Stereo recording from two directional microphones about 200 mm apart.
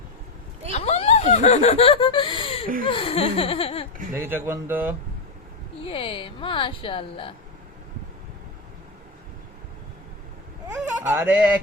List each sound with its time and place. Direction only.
0.7 s snicker: 30° left (ahead or behind)
2.8 s a woman's voice: 25° left (ahead or behind)
4.1 s speech: 10° right (ahead or behind)
5.8 s a woman's voice: 25° left (ahead or behind)
11.1 s speech: 10° right (ahead or behind)